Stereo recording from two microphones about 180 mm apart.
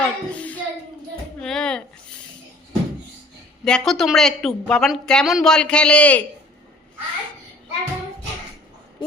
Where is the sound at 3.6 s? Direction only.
5° left (ahead or behind).